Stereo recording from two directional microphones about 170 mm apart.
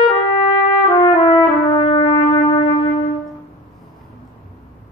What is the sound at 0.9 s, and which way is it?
Brass instrument, 30° left (ahead or behind).